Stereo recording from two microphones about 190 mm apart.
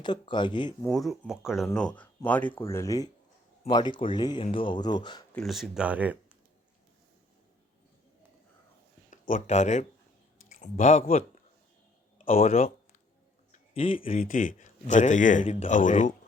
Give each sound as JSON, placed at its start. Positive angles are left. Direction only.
{"t": 0.0, "sound": "speech", "side_deg": 25}
{"t": 0.8, "sound": "speech", "side_deg": 0}
{"t": 5.3, "sound": "speech", "side_deg": 0}
{"t": 9.0, "sound": "speech", "side_deg": 40}
{"t": 12.2, "sound": "a sound", "side_deg": 30}
{"t": 14.2, "sound": "speech", "side_deg": 45}